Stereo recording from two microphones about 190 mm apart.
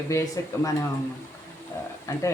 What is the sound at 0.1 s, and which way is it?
Speech, 15° left (ahead or behind).